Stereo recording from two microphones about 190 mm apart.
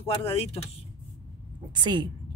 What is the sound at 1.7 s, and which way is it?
Speech, 25° right (ahead or behind).